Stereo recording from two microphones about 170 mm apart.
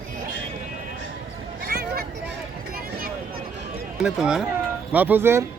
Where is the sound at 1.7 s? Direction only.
65° right (ahead or behind).